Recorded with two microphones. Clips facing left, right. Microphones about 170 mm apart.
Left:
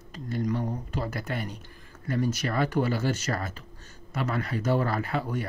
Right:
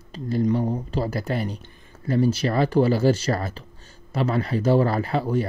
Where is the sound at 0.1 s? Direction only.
30° right (ahead or behind).